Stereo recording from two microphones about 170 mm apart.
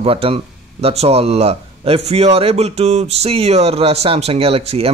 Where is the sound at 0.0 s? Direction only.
35° right (ahead or behind).